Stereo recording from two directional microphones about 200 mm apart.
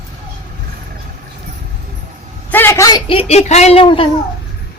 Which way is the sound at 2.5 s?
10° left (ahead or behind).